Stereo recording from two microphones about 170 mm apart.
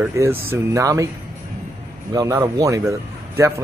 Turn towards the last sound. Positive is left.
turn(degrees=-15)  # may be behind; listen again after turning